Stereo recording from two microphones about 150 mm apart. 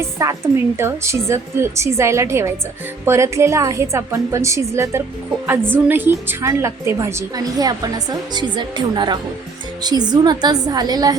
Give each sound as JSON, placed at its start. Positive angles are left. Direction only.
{"t": 0.0, "sound": "a woman's voice", "side_deg": -20}